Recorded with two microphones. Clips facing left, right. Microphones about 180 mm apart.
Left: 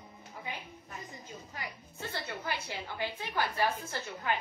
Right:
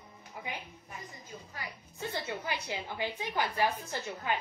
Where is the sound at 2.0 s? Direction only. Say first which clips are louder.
Right 2 dB; 15° right (ahead or behind).